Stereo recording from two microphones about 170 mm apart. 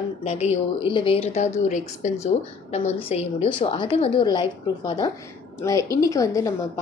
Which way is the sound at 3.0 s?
35° left (ahead or behind).